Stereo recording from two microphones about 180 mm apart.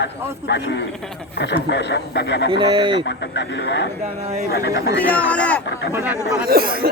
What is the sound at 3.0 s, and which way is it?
Speech, 70° left (ahead or behind).